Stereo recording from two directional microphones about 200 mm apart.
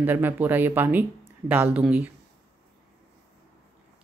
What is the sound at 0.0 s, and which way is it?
Speech, 10° right (ahead or behind).